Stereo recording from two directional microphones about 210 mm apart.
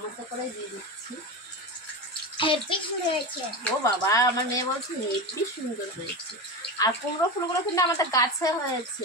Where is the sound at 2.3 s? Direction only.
25° left (ahead or behind).